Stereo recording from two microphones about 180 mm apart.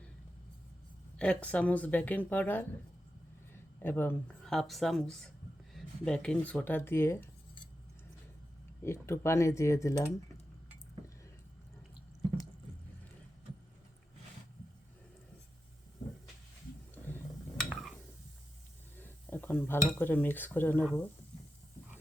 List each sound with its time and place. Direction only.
1.1 s speech: 5° left (ahead or behind)
8.8 s speech: 15° left (ahead or behind)
16.9 s wild animals: 10° left (ahead or behind)
17.7 s a sound: centre (ahead or behind)
18.9 s dishes: 10° left (ahead or behind)
20.0 s speech: 10° left (ahead or behind)